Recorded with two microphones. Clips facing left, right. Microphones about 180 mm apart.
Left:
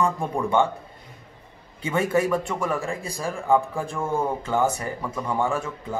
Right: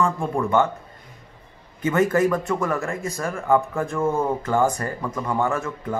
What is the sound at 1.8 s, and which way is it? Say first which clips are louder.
A man's voice: right 3 dB; 10° left (ahead or behind).